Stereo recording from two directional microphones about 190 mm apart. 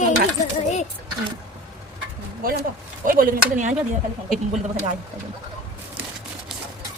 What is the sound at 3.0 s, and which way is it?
Speech, 45° right (ahead or behind).